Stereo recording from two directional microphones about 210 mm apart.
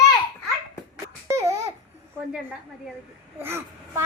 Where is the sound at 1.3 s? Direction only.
15° right (ahead or behind).